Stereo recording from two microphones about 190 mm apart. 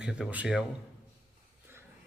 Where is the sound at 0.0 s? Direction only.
5° right (ahead or behind).